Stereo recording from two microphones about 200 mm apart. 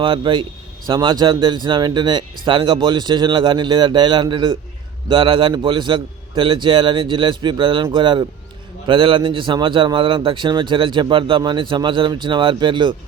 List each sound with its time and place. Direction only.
0.0 s a man's voice: 25° right (ahead or behind)